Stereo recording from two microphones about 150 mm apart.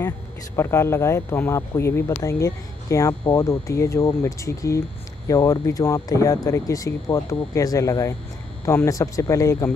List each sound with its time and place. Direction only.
0.6 s speech: 15° left (ahead or behind)